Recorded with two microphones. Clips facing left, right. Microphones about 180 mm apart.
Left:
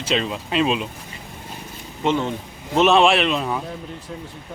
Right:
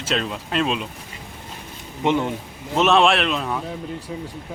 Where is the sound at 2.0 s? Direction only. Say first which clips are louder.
Right 1 dB; 15° right (ahead or behind).